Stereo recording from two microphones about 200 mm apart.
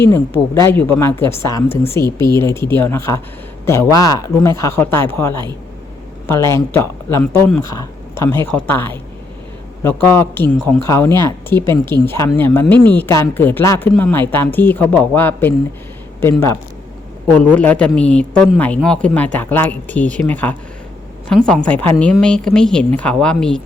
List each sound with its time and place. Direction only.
0.0 s a woman's voice: 10° left (ahead or behind)